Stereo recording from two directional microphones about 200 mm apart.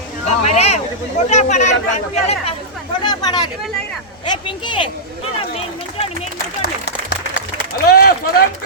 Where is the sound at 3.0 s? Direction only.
20° left (ahead or behind).